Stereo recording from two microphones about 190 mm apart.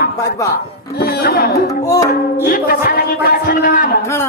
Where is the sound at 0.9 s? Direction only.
55° left (ahead or behind).